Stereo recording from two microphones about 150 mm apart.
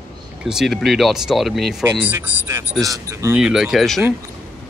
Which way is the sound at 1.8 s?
15° right (ahead or behind).